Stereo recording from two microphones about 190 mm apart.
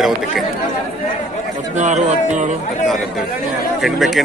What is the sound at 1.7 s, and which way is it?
Speech, 40° right (ahead or behind).